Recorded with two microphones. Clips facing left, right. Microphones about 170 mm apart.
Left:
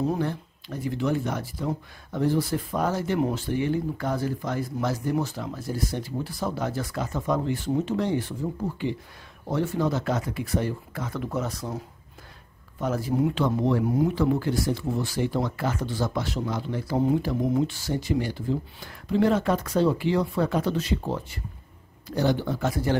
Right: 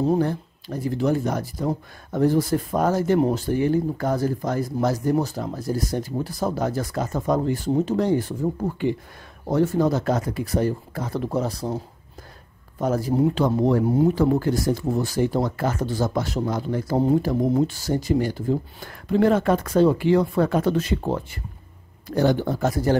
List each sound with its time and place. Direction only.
0.1 s speech: 40° right (ahead or behind)
12.8 s speech: 40° right (ahead or behind)